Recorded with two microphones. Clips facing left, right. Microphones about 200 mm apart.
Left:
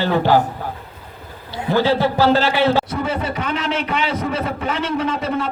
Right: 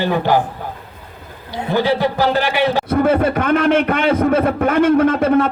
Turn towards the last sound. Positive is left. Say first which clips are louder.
# right 8 dB
turn(degrees=-55)  # may be behind; listen again after turning